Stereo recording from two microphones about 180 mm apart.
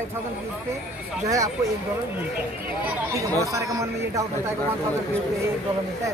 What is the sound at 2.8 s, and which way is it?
Speech, 15° right (ahead or behind).